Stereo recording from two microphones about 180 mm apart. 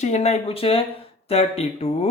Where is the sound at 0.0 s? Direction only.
40° left (ahead or behind).